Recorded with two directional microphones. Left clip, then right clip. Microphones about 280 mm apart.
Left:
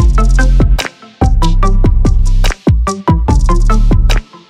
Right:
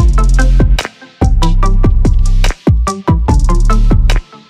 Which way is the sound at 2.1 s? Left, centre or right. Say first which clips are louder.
Left 1 dB; centre.